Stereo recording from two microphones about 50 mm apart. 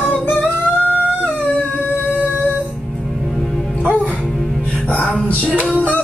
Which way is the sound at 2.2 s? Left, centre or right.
Right.